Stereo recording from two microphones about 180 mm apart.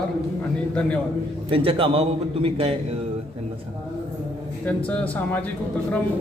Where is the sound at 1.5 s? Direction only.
30° right (ahead or behind).